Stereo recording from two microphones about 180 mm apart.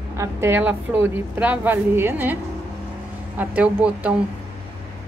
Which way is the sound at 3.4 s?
10° right (ahead or behind).